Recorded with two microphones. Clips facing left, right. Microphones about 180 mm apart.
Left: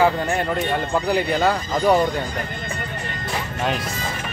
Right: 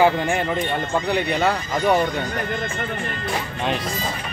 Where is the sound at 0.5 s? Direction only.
Centre (ahead or behind).